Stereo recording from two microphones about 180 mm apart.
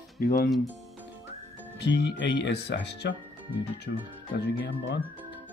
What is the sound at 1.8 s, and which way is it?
Speech, 75° left (ahead or behind).